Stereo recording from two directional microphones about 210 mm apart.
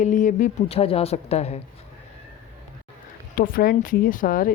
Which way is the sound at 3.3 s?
45° left (ahead or behind).